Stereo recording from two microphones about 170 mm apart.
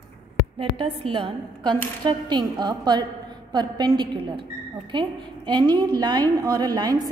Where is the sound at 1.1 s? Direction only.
30° right (ahead or behind).